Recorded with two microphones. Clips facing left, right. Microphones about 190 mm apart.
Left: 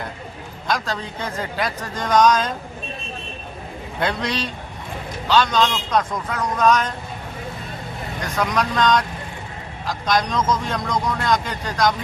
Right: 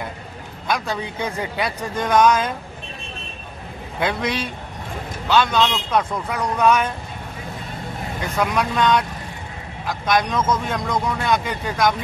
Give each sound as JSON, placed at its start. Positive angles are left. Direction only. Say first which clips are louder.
{"t": 0.8, "sound": "speech", "louder": "right 2 dB", "side_deg": -10}
{"t": 4.0, "sound": "speech", "louder": "right 1 dB", "side_deg": -10}
{"t": 8.2, "sound": "speech", "louder": "right 1 dB", "side_deg": -10}
{"t": 10.3, "sound": "speech", "louder": "even", "side_deg": -5}